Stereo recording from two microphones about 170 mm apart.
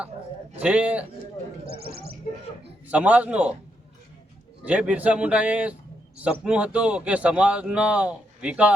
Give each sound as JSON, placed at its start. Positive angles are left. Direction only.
{"t": 0.6, "sound": "a man's voice", "side_deg": -5}
{"t": 1.6, "sound": "speech", "side_deg": -65}
{"t": 2.8, "sound": "a man's voice", "side_deg": -10}
{"t": 4.6, "sound": "a man's voice", "side_deg": -5}